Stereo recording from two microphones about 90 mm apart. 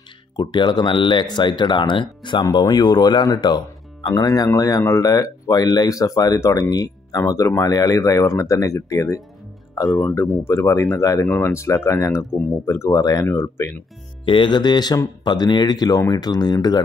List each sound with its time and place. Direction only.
0.4 s speech: 55° left (ahead or behind); by 9.2 s 40° left (ahead or behind)
10.4 s speech: 35° left (ahead or behind)
13.3 s speech: 30° left (ahead or behind)
14.2 s speech: 65° left (ahead or behind); by 16.8 s 50° left (ahead or behind)